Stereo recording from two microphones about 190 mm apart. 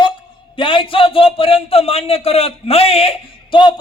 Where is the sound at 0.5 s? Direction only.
25° left (ahead or behind).